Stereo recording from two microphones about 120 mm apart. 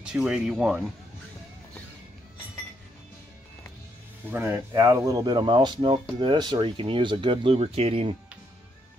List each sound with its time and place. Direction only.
0.0 s speech: 5° right (ahead or behind)
4.3 s speech: 15° right (ahead or behind)
4.7 s speech: 30° right (ahead or behind); by 8.2 s 55° right (ahead or behind)